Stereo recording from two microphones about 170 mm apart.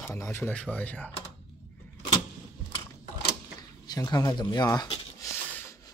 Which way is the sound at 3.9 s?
20° left (ahead or behind).